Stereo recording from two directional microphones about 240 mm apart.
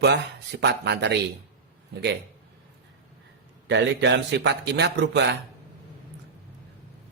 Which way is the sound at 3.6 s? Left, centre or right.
Right.